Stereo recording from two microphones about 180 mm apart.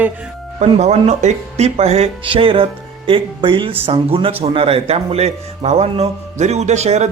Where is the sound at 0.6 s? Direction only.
35° right (ahead or behind).